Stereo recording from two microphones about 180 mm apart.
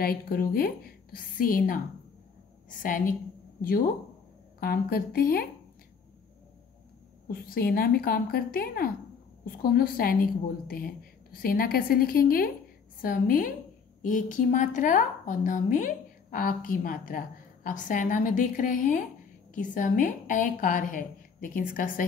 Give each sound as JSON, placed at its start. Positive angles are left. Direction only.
{"t": 0.0, "sound": "a woman's voice", "side_deg": 55}
{"t": 2.8, "sound": "a woman's voice", "side_deg": 50}
{"t": 4.6, "sound": "a woman's voice", "side_deg": 55}
{"t": 7.2, "sound": "a woman's voice", "side_deg": 55}